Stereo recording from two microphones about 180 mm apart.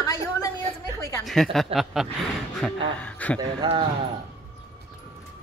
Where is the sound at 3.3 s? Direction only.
30° right (ahead or behind).